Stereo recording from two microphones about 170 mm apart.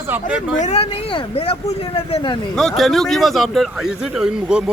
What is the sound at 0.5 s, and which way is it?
Speech, 40° left (ahead or behind).